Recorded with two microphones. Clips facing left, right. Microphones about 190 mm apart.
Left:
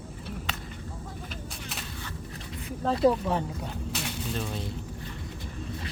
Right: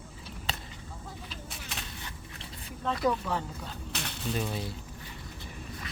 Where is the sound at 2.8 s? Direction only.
30° left (ahead or behind).